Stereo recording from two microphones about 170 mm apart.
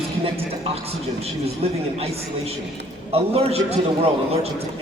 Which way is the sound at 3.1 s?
35° right (ahead or behind).